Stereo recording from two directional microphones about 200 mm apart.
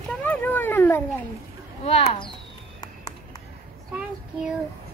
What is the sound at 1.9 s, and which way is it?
Speech, 30° left (ahead or behind).